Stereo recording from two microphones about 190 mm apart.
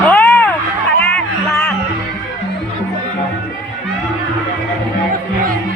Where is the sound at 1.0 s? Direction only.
5° left (ahead or behind).